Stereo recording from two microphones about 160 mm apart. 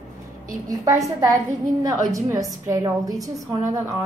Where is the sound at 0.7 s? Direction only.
20° right (ahead or behind).